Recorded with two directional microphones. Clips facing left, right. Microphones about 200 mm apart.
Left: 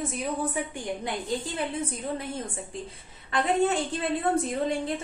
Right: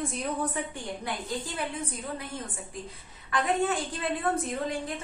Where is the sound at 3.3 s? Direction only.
25° left (ahead or behind).